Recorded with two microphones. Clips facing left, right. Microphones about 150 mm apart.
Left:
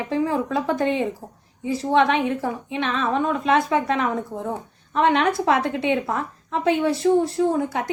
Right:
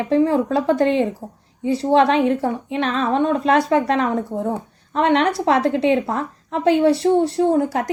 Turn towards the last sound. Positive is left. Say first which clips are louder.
# right 4 dB
turn(degrees=-35)  # may be behind; listen again after turning